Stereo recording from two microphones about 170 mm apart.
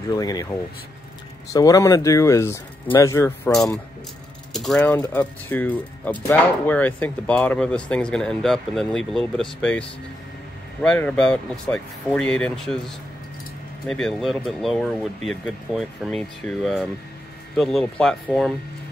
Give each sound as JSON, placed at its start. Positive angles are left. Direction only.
{"t": 0.1, "sound": "speech", "side_deg": 20}
{"t": 1.5, "sound": "speech", "side_deg": 20}
{"t": 3.5, "sound": "speech", "side_deg": 0}
{"t": 13.8, "sound": "speech", "side_deg": 5}